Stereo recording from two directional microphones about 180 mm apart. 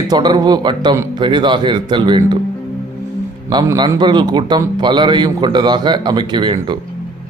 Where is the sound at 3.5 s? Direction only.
25° right (ahead or behind).